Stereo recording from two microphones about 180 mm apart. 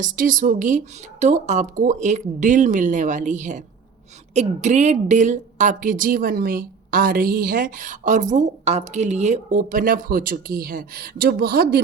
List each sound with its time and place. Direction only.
0.0 s a woman's voice: 45° right (ahead or behind)